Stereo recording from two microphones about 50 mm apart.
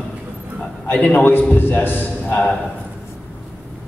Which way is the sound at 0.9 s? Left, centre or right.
Left.